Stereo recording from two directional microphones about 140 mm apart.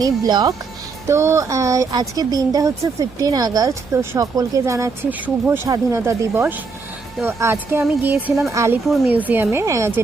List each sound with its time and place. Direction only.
0.0 s a woman's voice: 30° right (ahead or behind)
8.9 s speech: centre (ahead or behind)
9.1 s speech: 15° right (ahead or behind)